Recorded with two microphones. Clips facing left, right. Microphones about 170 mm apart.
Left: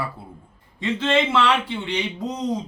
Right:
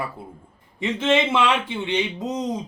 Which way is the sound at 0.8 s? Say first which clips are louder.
Right 1 dB; 15° right (ahead or behind).